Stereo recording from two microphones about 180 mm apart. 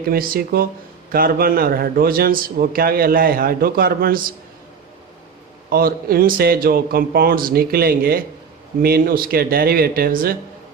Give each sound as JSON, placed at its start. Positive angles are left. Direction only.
{"t": 0.1, "sound": "a man's voice", "side_deg": -55}
{"t": 5.7, "sound": "a man's voice", "side_deg": -55}